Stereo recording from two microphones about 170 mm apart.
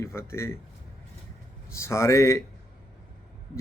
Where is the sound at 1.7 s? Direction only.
15° left (ahead or behind).